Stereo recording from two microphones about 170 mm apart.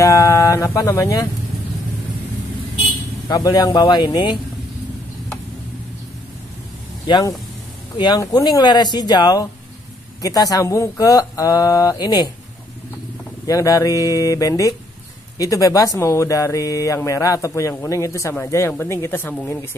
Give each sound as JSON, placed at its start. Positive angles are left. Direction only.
{"t": 0.0, "sound": "speech", "side_deg": 20}
{"t": 3.3, "sound": "speech", "side_deg": 25}
{"t": 7.1, "sound": "speech", "side_deg": 25}
{"t": 13.5, "sound": "speech", "side_deg": 20}